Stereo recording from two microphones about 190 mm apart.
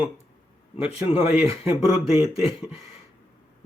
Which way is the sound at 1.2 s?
10° right (ahead or behind).